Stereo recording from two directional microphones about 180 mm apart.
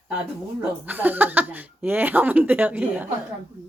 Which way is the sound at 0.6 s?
10° right (ahead or behind).